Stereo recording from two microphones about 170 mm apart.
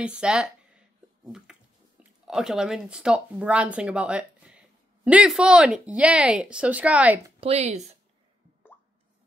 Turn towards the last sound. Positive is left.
turn(degrees=-40)  # may be behind; listen again after turning